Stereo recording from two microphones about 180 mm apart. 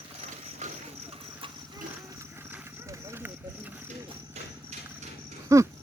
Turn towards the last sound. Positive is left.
turn(degrees=-15)  # may be behind; listen again after turning